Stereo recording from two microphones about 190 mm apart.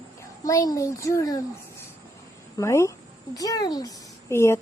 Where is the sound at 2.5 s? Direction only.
15° left (ahead or behind).